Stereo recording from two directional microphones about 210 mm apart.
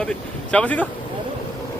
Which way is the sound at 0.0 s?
5° left (ahead or behind).